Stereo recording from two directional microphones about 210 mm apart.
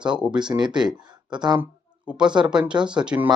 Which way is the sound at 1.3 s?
20° right (ahead or behind).